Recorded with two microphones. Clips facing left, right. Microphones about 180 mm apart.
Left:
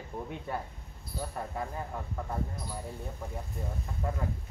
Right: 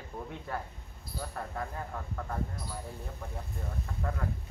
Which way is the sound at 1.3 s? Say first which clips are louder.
Left 1 dB; 15° left (ahead or behind).